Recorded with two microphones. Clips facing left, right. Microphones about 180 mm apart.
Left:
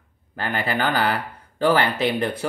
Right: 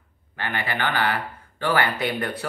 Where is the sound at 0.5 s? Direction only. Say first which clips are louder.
Left 4 dB; 35° left (ahead or behind).